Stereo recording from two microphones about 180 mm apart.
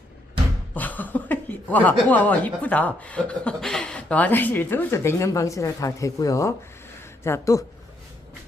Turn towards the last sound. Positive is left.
turn(degrees=15)  # may be behind; listen again after turning